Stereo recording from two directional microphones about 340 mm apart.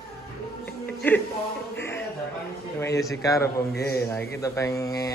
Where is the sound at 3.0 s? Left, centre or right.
Centre.